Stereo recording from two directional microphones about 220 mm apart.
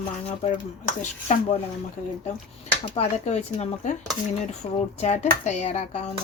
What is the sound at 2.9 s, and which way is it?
Speech, 30° left (ahead or behind).